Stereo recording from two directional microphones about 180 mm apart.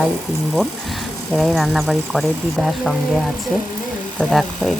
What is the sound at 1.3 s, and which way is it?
Speech, centre (ahead or behind).